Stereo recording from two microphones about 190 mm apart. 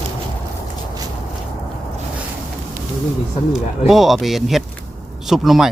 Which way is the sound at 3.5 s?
Centre (ahead or behind).